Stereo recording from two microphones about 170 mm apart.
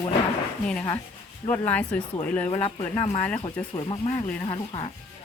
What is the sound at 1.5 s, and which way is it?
Speech, 10° left (ahead or behind).